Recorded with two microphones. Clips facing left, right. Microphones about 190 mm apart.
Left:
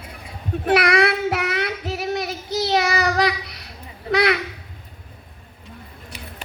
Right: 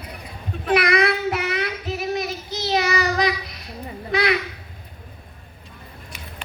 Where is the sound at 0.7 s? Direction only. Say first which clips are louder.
Left 1 dB; 75° left (ahead or behind).